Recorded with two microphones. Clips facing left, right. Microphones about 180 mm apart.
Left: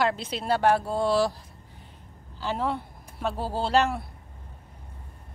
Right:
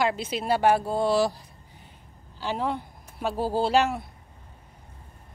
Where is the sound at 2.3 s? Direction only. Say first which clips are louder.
Even; centre (ahead or behind).